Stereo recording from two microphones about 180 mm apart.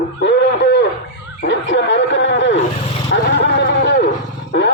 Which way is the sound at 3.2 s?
65° left (ahead or behind).